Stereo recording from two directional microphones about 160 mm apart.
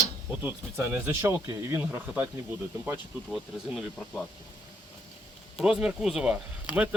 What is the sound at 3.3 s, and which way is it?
Speech, centre (ahead or behind).